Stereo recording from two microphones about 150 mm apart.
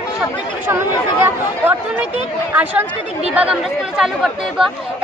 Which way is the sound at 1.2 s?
15° right (ahead or behind).